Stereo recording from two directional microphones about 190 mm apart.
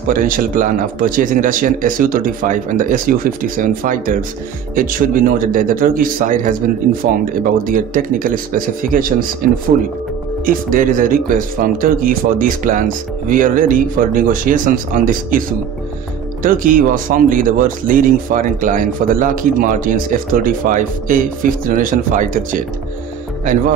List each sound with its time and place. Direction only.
0.1 s speech: 45° right (ahead or behind)
16.4 s speech: 45° right (ahead or behind)